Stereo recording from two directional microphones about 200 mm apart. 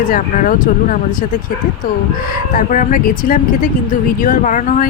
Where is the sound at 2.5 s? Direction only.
40° left (ahead or behind).